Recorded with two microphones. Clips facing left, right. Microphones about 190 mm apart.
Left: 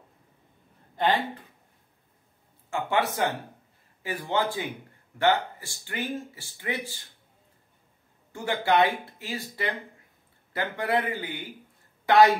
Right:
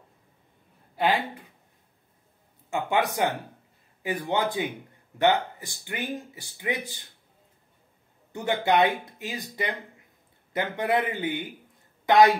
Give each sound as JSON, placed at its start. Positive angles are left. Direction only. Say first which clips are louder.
{"t": 0.9, "sound": "speech", "louder": "even", "side_deg": -10}
{"t": 2.7, "sound": "speech", "louder": "right 1 dB", "side_deg": -15}
{"t": 8.3, "sound": "speech", "louder": "right 1 dB", "side_deg": -20}